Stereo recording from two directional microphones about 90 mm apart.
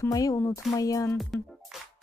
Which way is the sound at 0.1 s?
40° left (ahead or behind).